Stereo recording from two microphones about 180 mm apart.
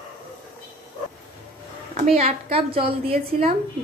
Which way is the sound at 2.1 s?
35° right (ahead or behind).